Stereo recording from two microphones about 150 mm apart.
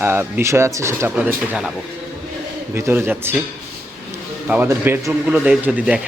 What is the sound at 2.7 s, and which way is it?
Speech, 15° right (ahead or behind).